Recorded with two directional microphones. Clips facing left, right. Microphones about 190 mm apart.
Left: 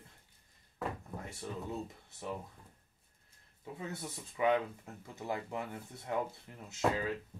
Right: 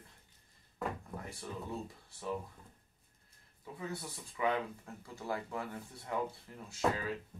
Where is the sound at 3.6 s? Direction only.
20° left (ahead or behind).